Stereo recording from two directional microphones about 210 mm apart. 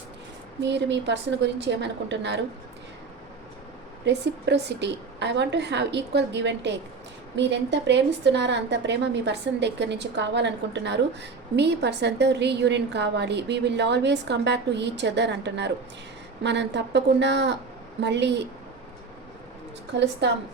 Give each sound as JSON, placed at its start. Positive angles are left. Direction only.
{"t": 0.6, "sound": "a woman's voice", "side_deg": -55}
{"t": 4.0, "sound": "a woman's voice", "side_deg": -55}
{"t": 19.9, "sound": "a woman's voice", "side_deg": -55}